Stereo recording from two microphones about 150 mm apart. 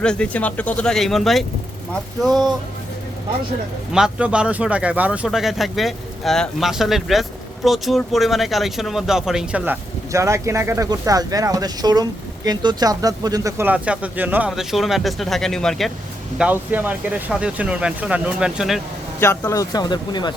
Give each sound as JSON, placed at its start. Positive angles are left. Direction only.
{"t": 0.0, "sound": "speech", "side_deg": 5}
{"t": 3.9, "sound": "speech", "side_deg": -5}
{"t": 10.1, "sound": "speech", "side_deg": -20}
{"t": 13.7, "sound": "speech", "side_deg": -5}
{"t": 16.4, "sound": "speech", "side_deg": -10}
{"t": 19.4, "sound": "speech", "side_deg": 20}